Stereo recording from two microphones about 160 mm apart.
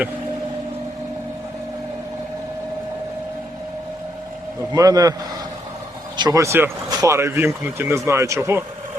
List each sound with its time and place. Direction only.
4.7 s a man's voice: 25° right (ahead or behind)
6.1 s speech: 25° right (ahead or behind)